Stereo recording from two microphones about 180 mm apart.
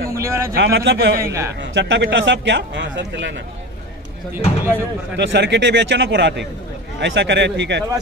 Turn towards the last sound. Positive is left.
turn(degrees=-80)